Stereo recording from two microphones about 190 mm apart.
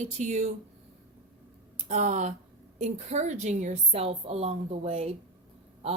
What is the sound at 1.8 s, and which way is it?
A woman's voice, 40° right (ahead or behind).